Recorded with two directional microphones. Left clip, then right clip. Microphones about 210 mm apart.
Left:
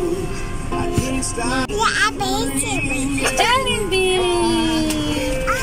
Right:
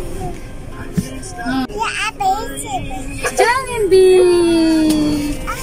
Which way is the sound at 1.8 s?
5° right (ahead or behind).